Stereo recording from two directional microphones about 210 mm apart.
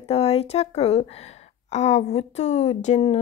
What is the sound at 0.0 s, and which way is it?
A woman's voice, 30° left (ahead or behind).